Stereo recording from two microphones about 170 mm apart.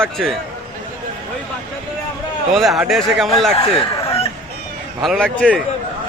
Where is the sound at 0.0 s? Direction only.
Centre (ahead or behind).